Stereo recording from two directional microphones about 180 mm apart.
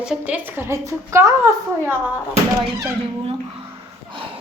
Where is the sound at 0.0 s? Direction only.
5° right (ahead or behind).